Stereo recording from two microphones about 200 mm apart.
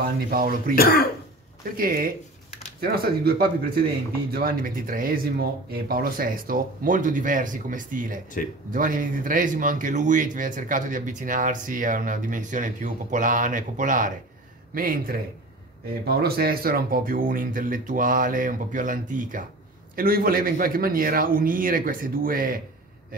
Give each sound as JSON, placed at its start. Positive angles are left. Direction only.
{"t": 0.0, "sound": "speech", "side_deg": -45}
{"t": 1.8, "sound": "speech", "side_deg": -45}